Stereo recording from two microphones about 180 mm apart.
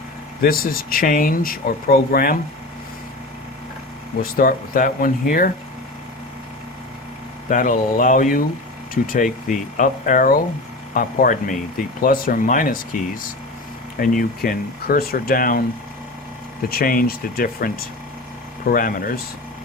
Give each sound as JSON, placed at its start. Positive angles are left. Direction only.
{"t": 0.4, "sound": "speech", "side_deg": 55}
{"t": 4.2, "sound": "speech", "side_deg": 50}
{"t": 7.5, "sound": "speech", "side_deg": 50}
{"t": 14.0, "sound": "speech", "side_deg": 50}
{"t": 16.6, "sound": "speech", "side_deg": 55}
{"t": 18.7, "sound": "speech", "side_deg": 50}